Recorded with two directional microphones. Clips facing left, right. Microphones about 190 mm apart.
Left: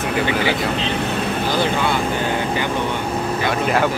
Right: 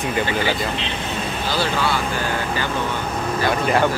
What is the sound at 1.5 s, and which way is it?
Speech, 20° left (ahead or behind).